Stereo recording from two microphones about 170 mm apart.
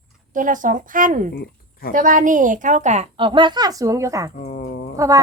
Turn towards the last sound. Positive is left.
turn(degrees=-20)  # may be behind; listen again after turning